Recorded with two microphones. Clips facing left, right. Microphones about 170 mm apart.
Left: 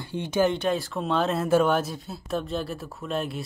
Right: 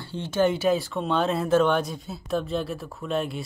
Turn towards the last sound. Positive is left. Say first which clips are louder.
# right 2 dB
turn(degrees=0)  # may be behind; listen again after turning